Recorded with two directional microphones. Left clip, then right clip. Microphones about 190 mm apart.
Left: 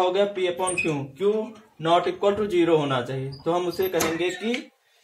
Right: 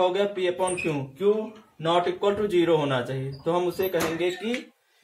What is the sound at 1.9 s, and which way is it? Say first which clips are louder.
A man's voice: left 2 dB; 25° left (ahead or behind).